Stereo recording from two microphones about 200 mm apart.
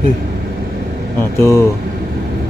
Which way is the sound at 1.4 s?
15° left (ahead or behind).